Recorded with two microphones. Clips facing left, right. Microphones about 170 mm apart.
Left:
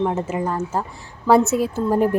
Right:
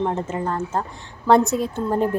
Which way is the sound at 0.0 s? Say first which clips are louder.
Left 2 dB; 10° left (ahead or behind).